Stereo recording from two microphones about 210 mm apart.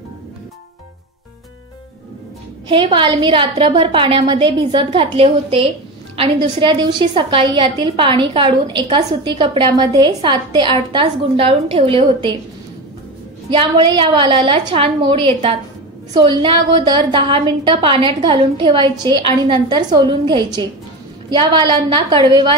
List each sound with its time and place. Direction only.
2.7 s a woman's voice: 25° right (ahead or behind)
13.5 s a woman's voice: 20° right (ahead or behind)